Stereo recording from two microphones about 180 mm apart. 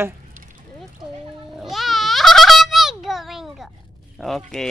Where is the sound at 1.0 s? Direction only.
25° right (ahead or behind).